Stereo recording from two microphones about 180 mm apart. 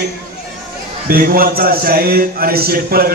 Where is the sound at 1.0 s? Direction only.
55° right (ahead or behind).